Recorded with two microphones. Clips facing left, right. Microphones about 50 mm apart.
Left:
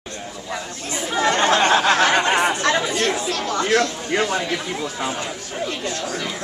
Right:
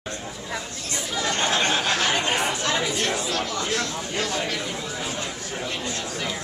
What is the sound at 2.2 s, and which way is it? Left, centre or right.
Chatter, left.